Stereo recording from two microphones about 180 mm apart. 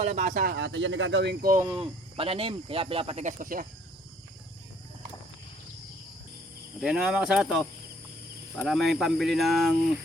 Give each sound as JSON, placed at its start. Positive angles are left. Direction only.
{"t": 0.0, "sound": "speech", "side_deg": -40}
{"t": 0.5, "sound": "speech", "side_deg": -85}
{"t": 1.6, "sound": "speech", "side_deg": -30}
{"t": 6.8, "sound": "speech", "side_deg": 0}